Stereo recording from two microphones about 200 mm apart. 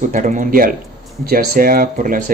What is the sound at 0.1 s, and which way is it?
Speech, 40° right (ahead or behind).